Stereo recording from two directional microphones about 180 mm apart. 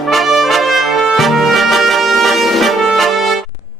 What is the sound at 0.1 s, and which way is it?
Trumpet, centre (ahead or behind).